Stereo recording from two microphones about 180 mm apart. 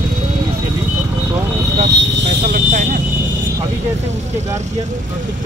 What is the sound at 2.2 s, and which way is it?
Vehicle, 45° right (ahead or behind).